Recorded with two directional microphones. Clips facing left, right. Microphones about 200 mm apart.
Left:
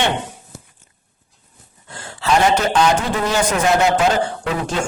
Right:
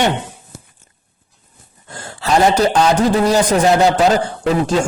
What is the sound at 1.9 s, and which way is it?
A man's voice, 40° right (ahead or behind).